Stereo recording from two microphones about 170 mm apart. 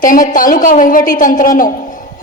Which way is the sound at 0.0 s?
55° left (ahead or behind).